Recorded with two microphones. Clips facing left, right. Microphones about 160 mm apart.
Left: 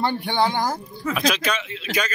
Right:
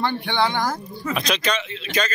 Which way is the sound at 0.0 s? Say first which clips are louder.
Left 1 dB; 40° left (ahead or behind).